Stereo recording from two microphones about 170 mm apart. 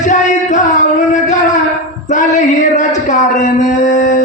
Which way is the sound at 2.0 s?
45° left (ahead or behind).